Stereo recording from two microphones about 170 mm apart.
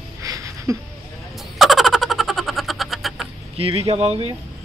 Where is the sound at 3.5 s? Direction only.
35° right (ahead or behind).